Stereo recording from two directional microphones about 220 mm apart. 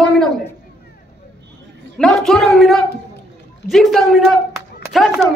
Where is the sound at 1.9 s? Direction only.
Centre (ahead or behind).